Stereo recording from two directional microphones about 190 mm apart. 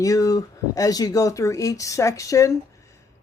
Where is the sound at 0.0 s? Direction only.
20° left (ahead or behind).